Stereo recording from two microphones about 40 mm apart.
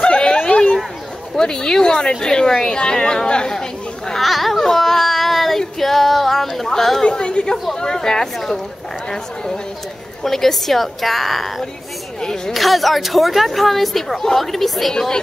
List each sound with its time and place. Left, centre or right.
0.0 s a sound: left
1.3 s a woman's voice: centre
4.2 s a woman's voice: centre
4.6 s a sound: centre
7.1 s a woman's voice: left
10.2 s a woman's voice: centre
12.2 s a woman's voice: centre
12.5 s a woman's voice: centre